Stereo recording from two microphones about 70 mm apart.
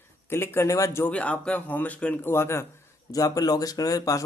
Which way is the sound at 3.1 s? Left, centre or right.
Left.